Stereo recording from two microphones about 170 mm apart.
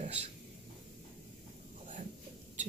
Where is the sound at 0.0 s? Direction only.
40° right (ahead or behind).